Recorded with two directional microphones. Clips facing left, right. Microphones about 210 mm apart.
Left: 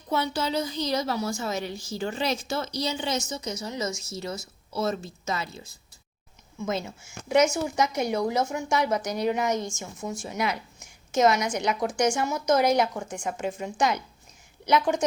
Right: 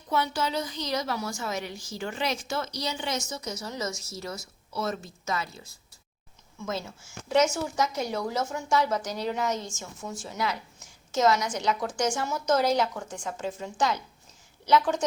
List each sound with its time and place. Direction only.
0.1 s a woman's voice: 30° left (ahead or behind)
6.6 s a woman's voice: 20° left (ahead or behind)